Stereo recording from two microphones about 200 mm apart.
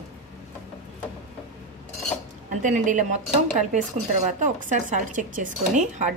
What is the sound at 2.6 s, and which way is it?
Speech, 40° right (ahead or behind).